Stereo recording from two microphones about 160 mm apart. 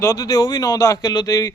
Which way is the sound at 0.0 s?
20° left (ahead or behind).